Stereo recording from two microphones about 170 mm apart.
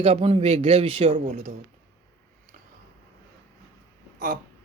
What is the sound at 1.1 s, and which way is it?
Speech, 45° right (ahead or behind).